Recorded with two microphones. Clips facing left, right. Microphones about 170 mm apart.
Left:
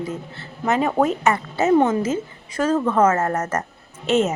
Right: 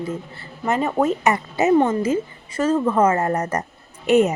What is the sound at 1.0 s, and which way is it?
Speech, 15° right (ahead or behind).